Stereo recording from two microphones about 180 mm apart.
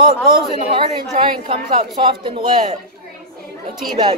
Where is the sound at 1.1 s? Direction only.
30° right (ahead or behind).